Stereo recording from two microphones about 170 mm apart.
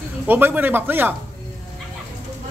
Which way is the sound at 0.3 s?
10° right (ahead or behind).